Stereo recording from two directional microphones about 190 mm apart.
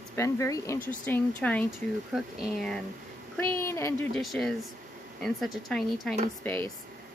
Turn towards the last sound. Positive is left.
turn(degrees=10)  # may be behind; listen again after turning